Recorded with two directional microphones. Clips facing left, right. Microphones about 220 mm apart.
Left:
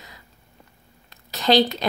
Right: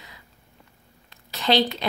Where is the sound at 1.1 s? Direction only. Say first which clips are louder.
Left 3 dB; 40° left (ahead or behind).